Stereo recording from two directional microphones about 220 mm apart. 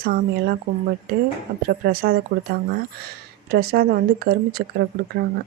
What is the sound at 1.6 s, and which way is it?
Speech, 40° right (ahead or behind).